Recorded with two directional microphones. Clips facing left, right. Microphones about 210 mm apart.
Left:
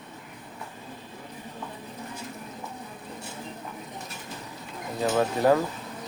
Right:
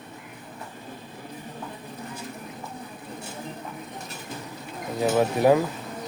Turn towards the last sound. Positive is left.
turn(degrees=-15)  # may be behind; listen again after turning